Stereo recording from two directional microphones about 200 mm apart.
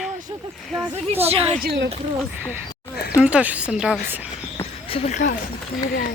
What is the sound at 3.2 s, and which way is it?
Speech, 5° right (ahead or behind).